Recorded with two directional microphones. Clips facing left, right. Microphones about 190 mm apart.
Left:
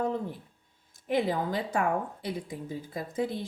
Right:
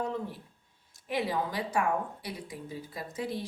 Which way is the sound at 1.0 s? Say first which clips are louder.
Left 4 dB; 55° left (ahead or behind).